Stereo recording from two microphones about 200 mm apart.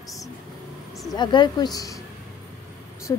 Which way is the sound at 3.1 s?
15° left (ahead or behind).